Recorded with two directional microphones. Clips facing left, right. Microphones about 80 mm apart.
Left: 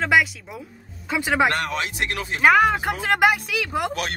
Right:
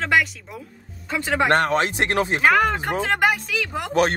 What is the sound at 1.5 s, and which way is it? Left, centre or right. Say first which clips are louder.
Speech: right 5 dB; right.